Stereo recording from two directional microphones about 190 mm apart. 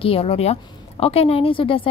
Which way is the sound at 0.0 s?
30° left (ahead or behind).